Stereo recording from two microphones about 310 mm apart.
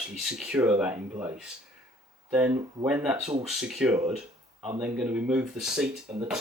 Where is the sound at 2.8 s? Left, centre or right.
Centre.